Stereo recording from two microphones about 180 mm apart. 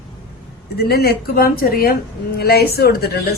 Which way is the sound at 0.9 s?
60° left (ahead or behind).